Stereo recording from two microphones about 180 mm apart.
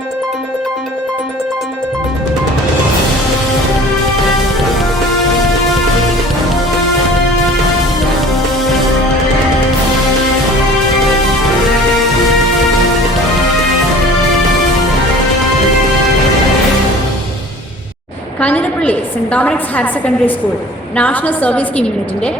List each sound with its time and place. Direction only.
18.3 s a woman's voice: 5° left (ahead or behind)